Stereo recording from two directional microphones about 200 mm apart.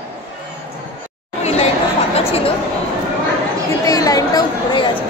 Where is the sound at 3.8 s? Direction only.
15° left (ahead or behind).